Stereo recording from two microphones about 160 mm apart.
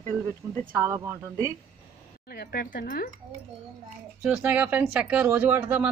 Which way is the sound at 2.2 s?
75° left (ahead or behind).